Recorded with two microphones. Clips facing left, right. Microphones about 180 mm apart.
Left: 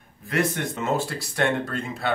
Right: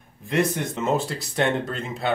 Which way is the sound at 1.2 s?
20° right (ahead or behind).